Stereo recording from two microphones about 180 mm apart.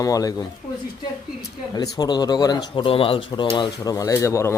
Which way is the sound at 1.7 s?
20° left (ahead or behind).